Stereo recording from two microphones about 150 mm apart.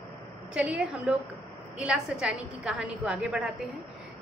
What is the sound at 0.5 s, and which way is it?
A woman's voice, 10° right (ahead or behind).